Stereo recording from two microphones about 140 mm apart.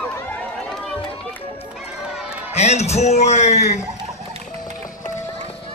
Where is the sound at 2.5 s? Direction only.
50° left (ahead or behind).